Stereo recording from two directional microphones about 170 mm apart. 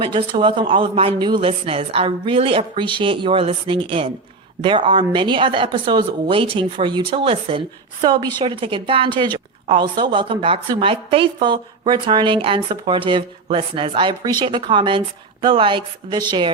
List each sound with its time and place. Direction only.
0.0 s a man's voice: 30° right (ahead or behind)